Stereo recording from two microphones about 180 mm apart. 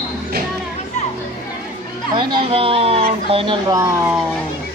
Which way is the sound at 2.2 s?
25° right (ahead or behind).